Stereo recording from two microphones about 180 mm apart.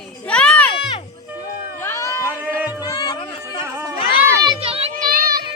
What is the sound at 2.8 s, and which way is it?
Music, 20° left (ahead or behind).